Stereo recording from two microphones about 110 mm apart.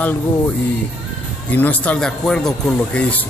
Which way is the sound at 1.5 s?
15° left (ahead or behind).